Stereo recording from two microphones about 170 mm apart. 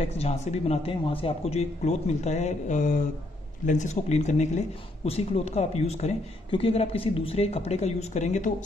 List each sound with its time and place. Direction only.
0.0 s speech: 40° left (ahead or behind)